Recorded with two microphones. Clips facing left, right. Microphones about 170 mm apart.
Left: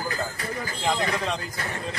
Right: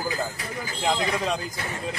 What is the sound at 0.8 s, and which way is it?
Speech, 15° right (ahead or behind).